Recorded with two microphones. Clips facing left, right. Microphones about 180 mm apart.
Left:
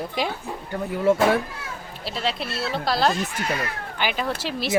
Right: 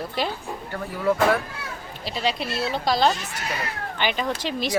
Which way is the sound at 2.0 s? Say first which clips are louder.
Right 1 dB; centre (ahead or behind).